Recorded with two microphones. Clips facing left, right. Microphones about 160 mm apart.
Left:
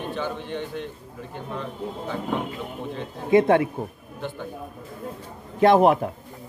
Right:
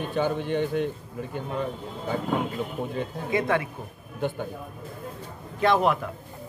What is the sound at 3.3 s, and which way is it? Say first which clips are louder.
Speech: left 8 dB; 30° left (ahead or behind).